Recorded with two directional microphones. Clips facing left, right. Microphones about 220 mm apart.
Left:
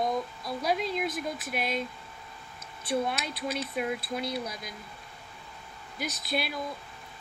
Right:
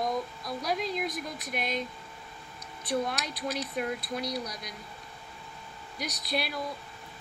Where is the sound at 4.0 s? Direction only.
25° left (ahead or behind).